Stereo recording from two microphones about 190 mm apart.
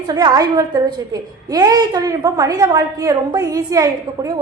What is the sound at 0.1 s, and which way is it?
A woman's voice, 20° right (ahead or behind).